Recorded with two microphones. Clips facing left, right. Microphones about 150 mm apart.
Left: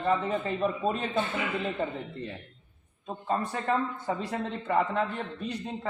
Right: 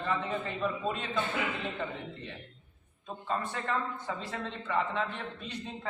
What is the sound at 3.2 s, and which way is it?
Speech, 40° left (ahead or behind).